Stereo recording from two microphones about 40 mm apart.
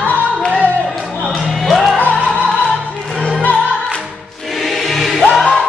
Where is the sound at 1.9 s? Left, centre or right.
Left.